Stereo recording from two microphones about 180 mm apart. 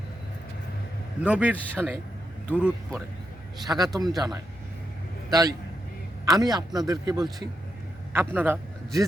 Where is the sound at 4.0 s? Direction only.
20° right (ahead or behind).